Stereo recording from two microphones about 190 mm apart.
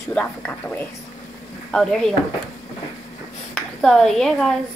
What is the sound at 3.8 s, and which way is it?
Speech, centre (ahead or behind).